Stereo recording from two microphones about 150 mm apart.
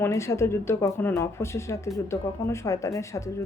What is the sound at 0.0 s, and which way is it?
Speech, 20° left (ahead or behind).